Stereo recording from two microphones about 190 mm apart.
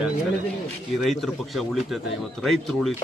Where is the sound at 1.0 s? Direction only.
Centre (ahead or behind).